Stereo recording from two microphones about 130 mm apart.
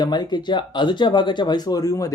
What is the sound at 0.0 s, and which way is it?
Speech, 35° left (ahead or behind).